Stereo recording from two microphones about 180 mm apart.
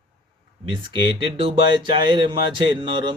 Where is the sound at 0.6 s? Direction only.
30° right (ahead or behind).